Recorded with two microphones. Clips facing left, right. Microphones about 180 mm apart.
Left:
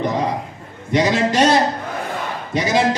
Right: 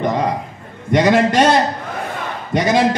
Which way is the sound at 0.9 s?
55° right (ahead or behind).